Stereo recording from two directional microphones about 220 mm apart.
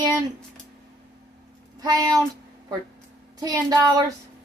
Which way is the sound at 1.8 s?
15° right (ahead or behind).